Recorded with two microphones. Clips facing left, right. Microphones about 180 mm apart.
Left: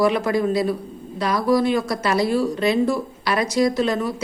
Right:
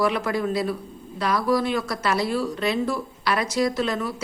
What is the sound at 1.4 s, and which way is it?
Speech, 20° left (ahead or behind).